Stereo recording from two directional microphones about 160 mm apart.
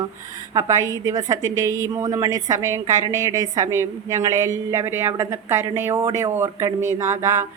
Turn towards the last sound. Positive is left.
turn(degrees=-20)  # may be behind; listen again after turning